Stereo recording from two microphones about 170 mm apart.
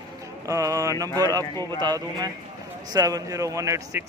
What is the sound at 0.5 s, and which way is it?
A man's voice, 20° right (ahead or behind).